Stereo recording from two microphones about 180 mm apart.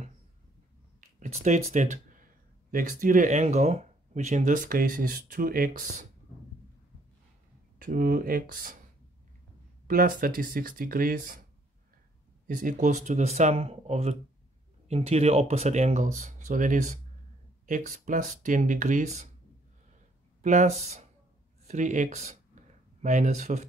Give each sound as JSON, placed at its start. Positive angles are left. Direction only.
{"t": 1.2, "sound": "speech", "side_deg": -40}
{"t": 7.8, "sound": "speech", "side_deg": -50}
{"t": 9.8, "sound": "speech", "side_deg": -55}
{"t": 12.4, "sound": "speech", "side_deg": -45}
{"t": 20.4, "sound": "speech", "side_deg": -40}